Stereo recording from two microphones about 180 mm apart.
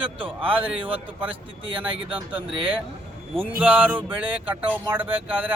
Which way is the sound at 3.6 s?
10° right (ahead or behind).